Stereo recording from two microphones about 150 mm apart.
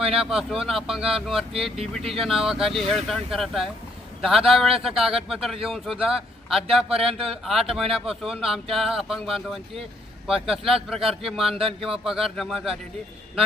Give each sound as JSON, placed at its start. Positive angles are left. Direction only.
{"t": 0.0, "sound": "speech", "side_deg": -5}
{"t": 7.1, "sound": "speech", "side_deg": -40}
{"t": 7.4, "sound": "speech", "side_deg": 0}